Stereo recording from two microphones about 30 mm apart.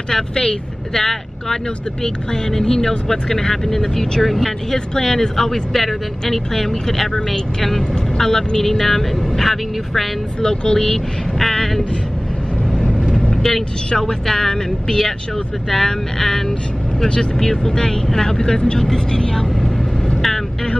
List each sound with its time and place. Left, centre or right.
0.1 s speech: left
0.9 s speech: centre
4.2 s speech: centre
4.7 s speech: centre
5.3 s speech: centre
10.4 s speech: left
12.7 s vehicle: left
13.9 s speech: centre